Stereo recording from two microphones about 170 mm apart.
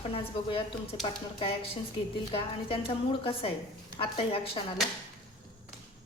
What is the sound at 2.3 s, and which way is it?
A woman's voice, 35° left (ahead or behind).